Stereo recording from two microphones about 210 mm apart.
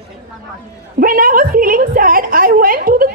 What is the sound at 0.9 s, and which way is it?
A woman's voice, 45° right (ahead or behind).